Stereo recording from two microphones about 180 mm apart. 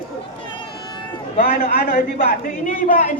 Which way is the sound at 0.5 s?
25° left (ahead or behind).